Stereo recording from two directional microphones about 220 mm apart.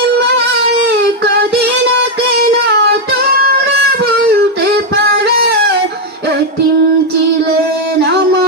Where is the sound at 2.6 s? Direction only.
50° right (ahead or behind).